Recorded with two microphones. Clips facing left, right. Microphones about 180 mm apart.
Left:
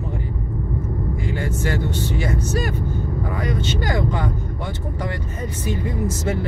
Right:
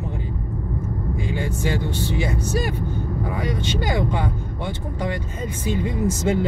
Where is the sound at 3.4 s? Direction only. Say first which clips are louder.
Left 2 dB; 15° right (ahead or behind).